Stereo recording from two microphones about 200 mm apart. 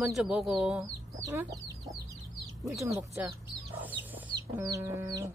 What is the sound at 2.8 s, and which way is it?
Speech, 15° right (ahead or behind).